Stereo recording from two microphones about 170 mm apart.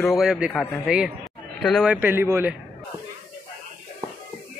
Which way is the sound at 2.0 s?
15° right (ahead or behind).